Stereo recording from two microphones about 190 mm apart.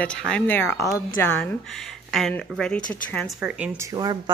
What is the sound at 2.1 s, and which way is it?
A woman's voice, centre (ahead or behind).